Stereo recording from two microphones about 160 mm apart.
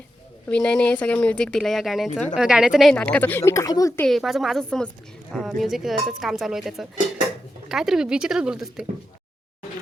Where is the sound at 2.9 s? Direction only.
10° left (ahead or behind).